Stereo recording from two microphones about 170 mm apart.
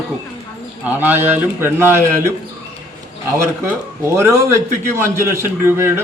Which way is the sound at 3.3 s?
15° right (ahead or behind).